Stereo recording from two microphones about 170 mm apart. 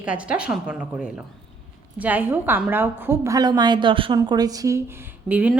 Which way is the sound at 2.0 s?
10° right (ahead or behind).